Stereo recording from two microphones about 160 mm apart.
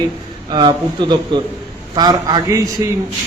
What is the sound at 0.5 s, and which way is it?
A man's voice, 25° right (ahead or behind).